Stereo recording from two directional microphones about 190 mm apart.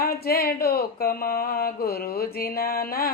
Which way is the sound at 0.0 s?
55° left (ahead or behind).